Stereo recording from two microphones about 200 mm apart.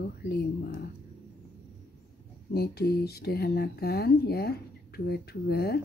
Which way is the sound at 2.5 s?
50° left (ahead or behind).